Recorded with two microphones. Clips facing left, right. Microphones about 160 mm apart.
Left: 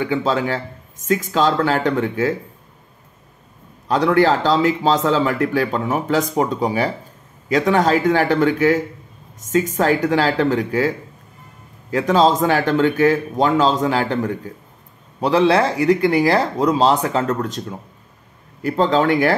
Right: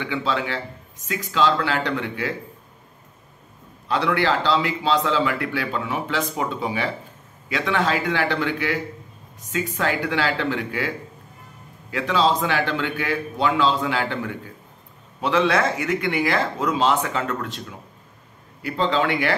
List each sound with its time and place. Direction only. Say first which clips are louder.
0.0 s a man's voice: left 6 dB; 40° left (ahead or behind)
3.8 s a man's voice: left 7 dB; 40° left (ahead or behind)
11.9 s a man's voice: left 5 dB; 45° left (ahead or behind)